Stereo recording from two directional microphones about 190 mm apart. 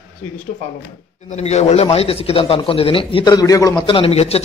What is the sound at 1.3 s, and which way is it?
A man's voice, 35° left (ahead or behind).